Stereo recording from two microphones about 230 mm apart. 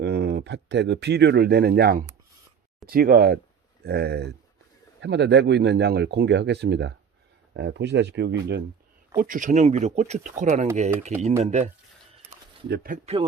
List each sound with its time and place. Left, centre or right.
0.0 s speech: right
9.1 s speech: right
12.6 s speech: right